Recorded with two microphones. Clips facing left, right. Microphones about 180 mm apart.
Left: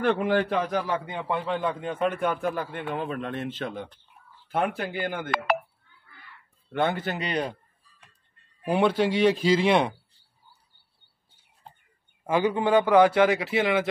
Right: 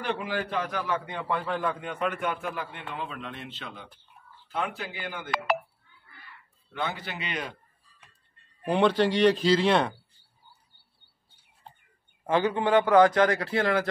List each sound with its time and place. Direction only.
0.0 s a man's voice: 50° left (ahead or behind)
1.1 s a man's voice: 25° left (ahead or behind)
2.6 s a man's voice: 50° left (ahead or behind)
6.7 s a man's voice: 55° left (ahead or behind); by 7.5 s 35° left (ahead or behind)
8.6 s a man's voice: 10° left (ahead or behind)
12.3 s a man's voice: 10° left (ahead or behind)